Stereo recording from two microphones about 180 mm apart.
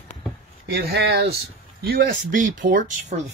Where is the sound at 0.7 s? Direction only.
65° right (ahead or behind); by 2.8 s 45° right (ahead or behind).